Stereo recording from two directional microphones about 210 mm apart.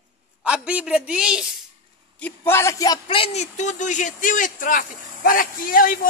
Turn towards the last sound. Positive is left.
turn(degrees=40)  # may be behind; listen again after turning